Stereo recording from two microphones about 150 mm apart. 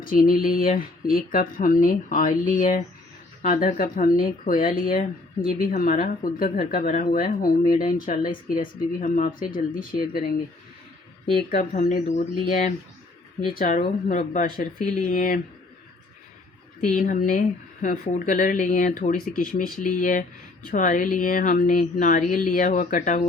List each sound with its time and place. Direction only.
0.0 s speech: 75° left (ahead or behind)
11.3 s speech: 60° left (ahead or behind)
13.5 s speech: 70° left (ahead or behind); by 14.4 s 55° left (ahead or behind)
14.6 s speech: 65° left (ahead or behind)
16.9 s speech: 60° left (ahead or behind)